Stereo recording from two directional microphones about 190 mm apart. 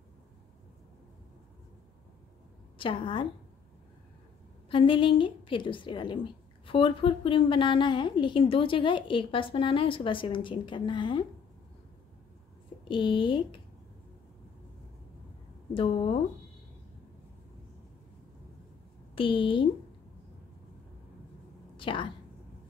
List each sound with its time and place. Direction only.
2.8 s a woman's voice: 25° left (ahead or behind)
4.6 s a woman's voice: 25° left (ahead or behind)
12.8 s a woman's voice: 25° left (ahead or behind)
15.7 s a woman's voice: 30° left (ahead or behind)
19.1 s a woman's voice: 25° left (ahead or behind)
21.7 s a woman's voice: 25° left (ahead or behind)